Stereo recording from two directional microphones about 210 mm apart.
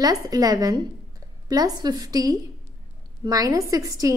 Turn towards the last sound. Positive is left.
turn(degrees=-15)  # may be behind; listen again after turning